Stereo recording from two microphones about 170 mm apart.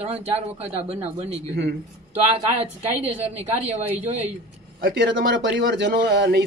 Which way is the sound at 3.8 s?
10° right (ahead or behind).